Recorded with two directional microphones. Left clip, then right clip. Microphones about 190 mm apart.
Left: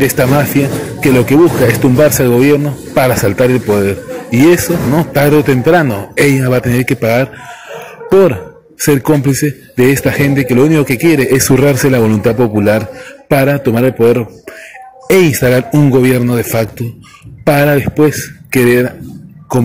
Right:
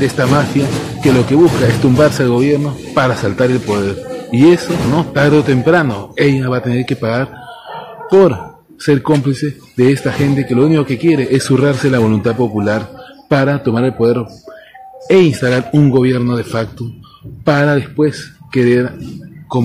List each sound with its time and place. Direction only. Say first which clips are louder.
0.0 s a man's voice: left 3 dB; 20° left (ahead or behind)
8.7 s a man's voice: left 2 dB; 20° left (ahead or behind)